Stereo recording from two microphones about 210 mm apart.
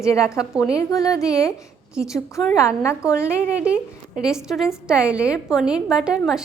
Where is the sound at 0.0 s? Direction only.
15° left (ahead or behind).